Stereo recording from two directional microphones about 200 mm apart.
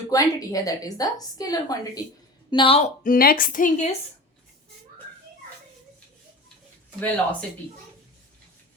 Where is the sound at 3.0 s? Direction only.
45° left (ahead or behind).